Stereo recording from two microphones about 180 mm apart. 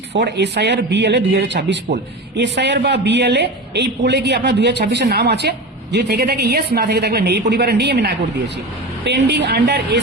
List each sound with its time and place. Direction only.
0.1 s a man's voice: 70° right (ahead or behind)